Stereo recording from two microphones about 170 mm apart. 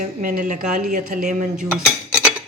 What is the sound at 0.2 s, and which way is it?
Speech, 55° right (ahead or behind).